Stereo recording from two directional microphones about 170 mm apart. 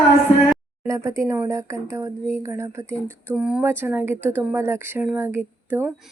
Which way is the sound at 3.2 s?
5° right (ahead or behind).